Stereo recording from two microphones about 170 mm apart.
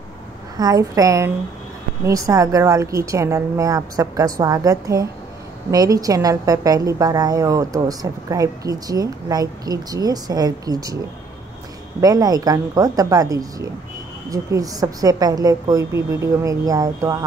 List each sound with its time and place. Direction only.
0.6 s a woman's voice: 20° right (ahead or behind)
12.0 s a woman's voice: 20° right (ahead or behind)